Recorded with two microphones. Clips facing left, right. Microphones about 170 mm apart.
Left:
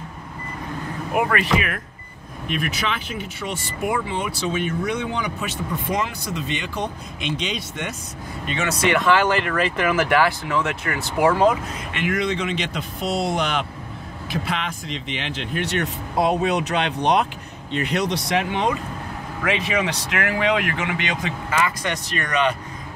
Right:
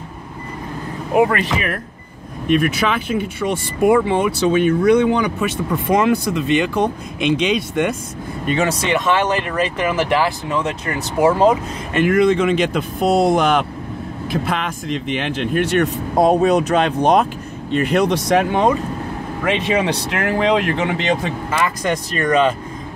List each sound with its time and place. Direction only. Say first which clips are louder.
1.1 s speech: right 5 dB; 35° right (ahead or behind)
2.5 s speech: right 9 dB; 50° right (ahead or behind)
8.5 s speech: right 4 dB; 30° right (ahead or behind)
8.9 s speech: even; 20° right (ahead or behind)
11.9 s speech: right 10 dB; 50° right (ahead or behind)
19.4 s speech: right 5 dB; 30° right (ahead or behind)